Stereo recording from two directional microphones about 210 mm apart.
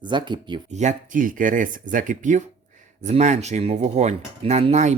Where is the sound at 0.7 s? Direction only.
35° right (ahead or behind).